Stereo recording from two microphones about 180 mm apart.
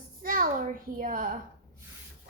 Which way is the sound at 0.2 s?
50° right (ahead or behind).